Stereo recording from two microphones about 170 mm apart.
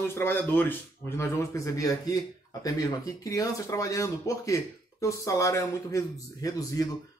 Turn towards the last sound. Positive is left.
turn(degrees=20)  # may be behind; listen again after turning